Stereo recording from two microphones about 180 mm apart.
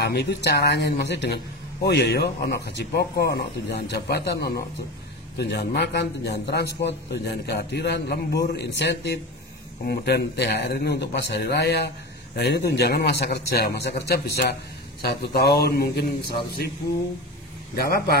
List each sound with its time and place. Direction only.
0.0 s a man's voice: 65° left (ahead or behind)